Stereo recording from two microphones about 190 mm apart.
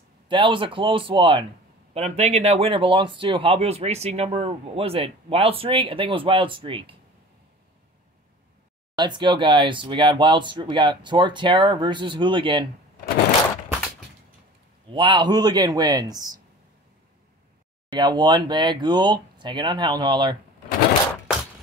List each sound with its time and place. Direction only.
0.3 s speech: 25° right (ahead or behind)
8.9 s speech: 25° right (ahead or behind)
14.9 s speech: 25° right (ahead or behind)
17.9 s speech: 20° right (ahead or behind)